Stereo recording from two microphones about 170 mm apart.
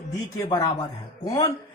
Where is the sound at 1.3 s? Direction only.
30° left (ahead or behind).